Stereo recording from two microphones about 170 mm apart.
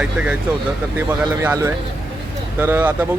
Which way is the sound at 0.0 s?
5° right (ahead or behind).